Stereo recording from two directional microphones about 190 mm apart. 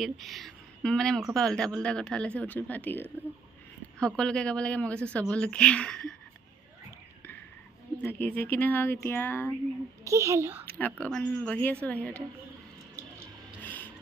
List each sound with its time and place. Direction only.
0.0 s speech: centre (ahead or behind)
8.0 s speech: 10° left (ahead or behind)
10.0 s a child's voice: 15° right (ahead or behind)
11.0 s speech: 5° left (ahead or behind)
13.6 s vehicle: 10° left (ahead or behind)